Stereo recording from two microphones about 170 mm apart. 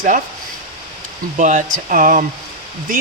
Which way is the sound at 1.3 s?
45° right (ahead or behind).